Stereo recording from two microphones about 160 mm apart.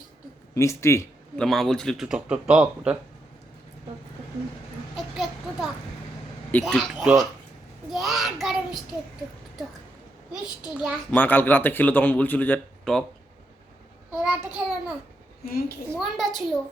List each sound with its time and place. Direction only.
0.5 s speech: 15° left (ahead or behind)
1.4 s a man's voice: centre (ahead or behind)
4.9 s a sound: centre (ahead or behind)
6.5 s a man's voice: 10° left (ahead or behind)
7.9 s child singing: centre (ahead or behind)
10.8 s a man's voice: 5° right (ahead or behind)
11.1 s speech: 10° left (ahead or behind)
14.1 s a child's voice: 5° right (ahead or behind)
15.4 s a child's voice: 70° left (ahead or behind)
16.0 s a man's voice: centre (ahead or behind)